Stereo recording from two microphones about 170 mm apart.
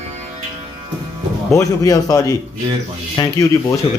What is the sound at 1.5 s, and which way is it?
Speech, 20° left (ahead or behind).